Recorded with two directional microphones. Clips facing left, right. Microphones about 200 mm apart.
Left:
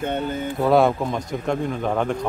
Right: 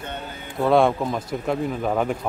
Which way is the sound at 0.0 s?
55° left (ahead or behind).